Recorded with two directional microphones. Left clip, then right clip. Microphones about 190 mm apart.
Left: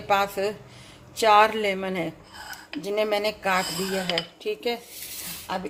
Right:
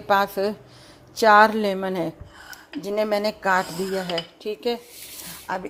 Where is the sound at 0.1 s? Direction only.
35° right (ahead or behind).